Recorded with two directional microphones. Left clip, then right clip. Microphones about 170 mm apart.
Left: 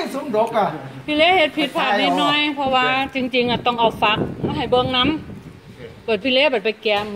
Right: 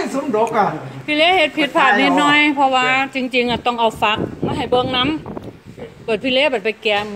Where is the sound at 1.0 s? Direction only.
25° right (ahead or behind).